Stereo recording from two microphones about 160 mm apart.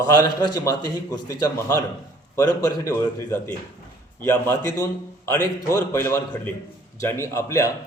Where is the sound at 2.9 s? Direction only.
15° left (ahead or behind).